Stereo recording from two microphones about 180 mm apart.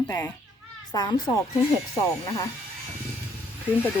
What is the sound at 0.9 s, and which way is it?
Speech, 25° left (ahead or behind).